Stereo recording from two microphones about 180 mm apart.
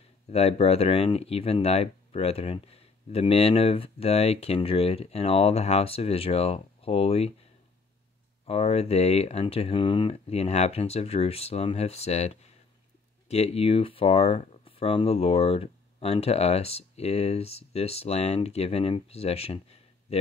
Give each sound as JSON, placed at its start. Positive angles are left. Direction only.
{"t": 0.3, "sound": "speech", "side_deg": 35}
{"t": 8.5, "sound": "speech", "side_deg": 35}